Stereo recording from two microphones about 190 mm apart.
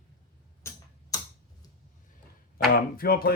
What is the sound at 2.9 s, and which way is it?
Speech, 50° left (ahead or behind).